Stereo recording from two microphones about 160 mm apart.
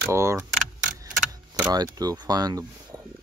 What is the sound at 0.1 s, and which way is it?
Speech, 15° right (ahead or behind).